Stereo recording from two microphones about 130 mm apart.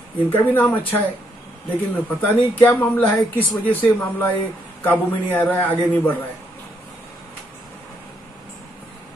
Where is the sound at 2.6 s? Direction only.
15° left (ahead or behind).